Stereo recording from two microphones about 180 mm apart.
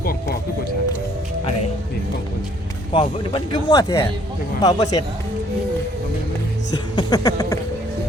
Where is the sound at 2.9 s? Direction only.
25° left (ahead or behind).